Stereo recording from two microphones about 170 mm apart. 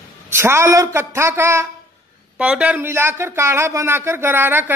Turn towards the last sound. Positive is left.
turn(degrees=-10)  # may be behind; listen again after turning